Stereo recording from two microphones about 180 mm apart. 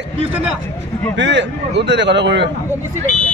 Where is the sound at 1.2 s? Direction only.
75° right (ahead or behind).